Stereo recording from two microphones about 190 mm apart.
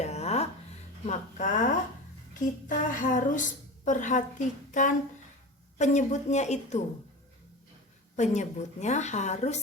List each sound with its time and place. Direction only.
0.0 s music: 35° left (ahead or behind)
1.0 s a woman's voice: 40° left (ahead or behind)
2.6 s a sound: 45° left (ahead or behind)
3.8 s a woman's voice: 40° left (ahead or behind)
8.1 s a woman's voice: 40° left (ahead or behind)